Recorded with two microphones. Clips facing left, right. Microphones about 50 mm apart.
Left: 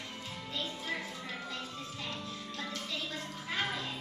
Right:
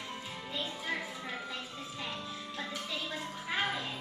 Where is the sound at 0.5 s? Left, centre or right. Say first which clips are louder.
Right 1 dB; centre.